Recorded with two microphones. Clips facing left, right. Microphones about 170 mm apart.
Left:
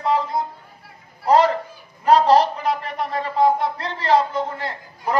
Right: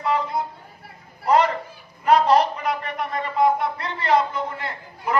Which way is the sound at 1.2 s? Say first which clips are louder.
Left 3 dB; 35° left (ahead or behind).